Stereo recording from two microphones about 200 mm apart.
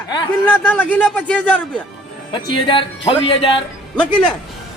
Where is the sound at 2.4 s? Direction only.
25° left (ahead or behind).